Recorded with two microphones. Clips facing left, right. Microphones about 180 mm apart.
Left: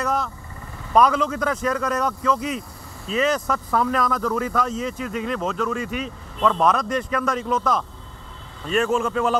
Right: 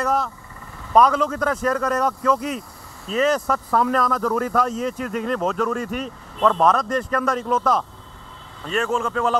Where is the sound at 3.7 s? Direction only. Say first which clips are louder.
Right 1 dB; 30° right (ahead or behind).